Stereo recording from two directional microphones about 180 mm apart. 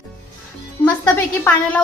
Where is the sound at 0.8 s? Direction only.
15° left (ahead or behind).